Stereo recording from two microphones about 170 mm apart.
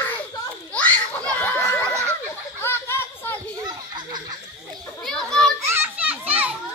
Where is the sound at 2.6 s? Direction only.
15° left (ahead or behind).